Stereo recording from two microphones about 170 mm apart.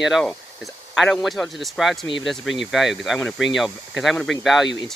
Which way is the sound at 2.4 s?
90° left.